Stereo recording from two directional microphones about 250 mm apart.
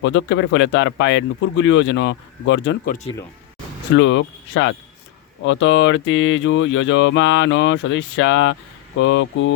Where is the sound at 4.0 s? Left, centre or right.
Left.